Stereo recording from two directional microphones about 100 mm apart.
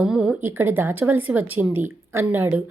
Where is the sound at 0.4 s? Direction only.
20° right (ahead or behind).